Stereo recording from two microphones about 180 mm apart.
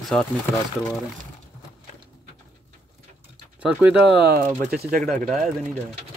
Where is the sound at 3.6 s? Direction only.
5° right (ahead or behind).